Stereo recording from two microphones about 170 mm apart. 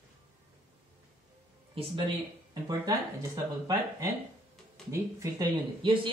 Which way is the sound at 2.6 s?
20° right (ahead or behind).